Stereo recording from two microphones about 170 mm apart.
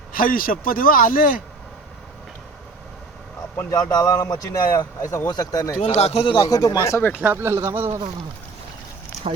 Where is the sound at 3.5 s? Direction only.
20° left (ahead or behind).